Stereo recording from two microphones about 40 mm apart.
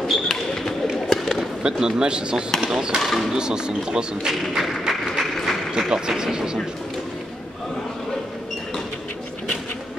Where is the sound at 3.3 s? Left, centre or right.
Centre.